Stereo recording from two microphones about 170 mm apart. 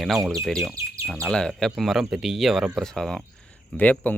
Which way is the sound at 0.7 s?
20° right (ahead or behind).